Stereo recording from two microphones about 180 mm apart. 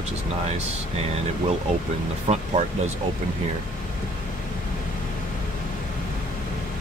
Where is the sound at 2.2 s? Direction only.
40° right (ahead or behind).